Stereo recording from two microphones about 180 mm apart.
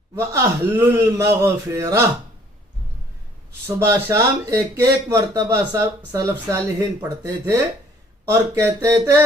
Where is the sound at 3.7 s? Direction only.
15° right (ahead or behind).